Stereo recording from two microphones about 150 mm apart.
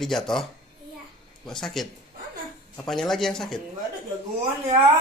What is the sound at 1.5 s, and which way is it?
Speech, 5° left (ahead or behind).